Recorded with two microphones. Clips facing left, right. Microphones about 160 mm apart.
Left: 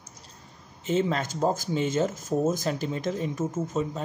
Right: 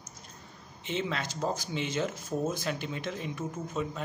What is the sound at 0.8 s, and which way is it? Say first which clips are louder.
Speech: left 7 dB; 45° left (ahead or behind).